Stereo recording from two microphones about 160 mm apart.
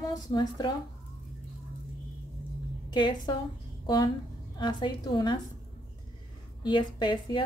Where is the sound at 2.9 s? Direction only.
30° left (ahead or behind).